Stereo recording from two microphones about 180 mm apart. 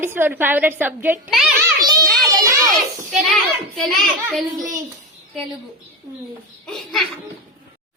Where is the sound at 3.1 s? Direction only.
Centre (ahead or behind).